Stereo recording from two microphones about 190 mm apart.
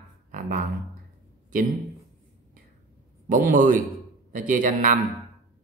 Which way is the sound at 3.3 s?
45° right (ahead or behind).